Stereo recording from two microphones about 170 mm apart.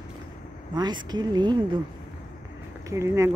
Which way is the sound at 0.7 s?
25° right (ahead or behind).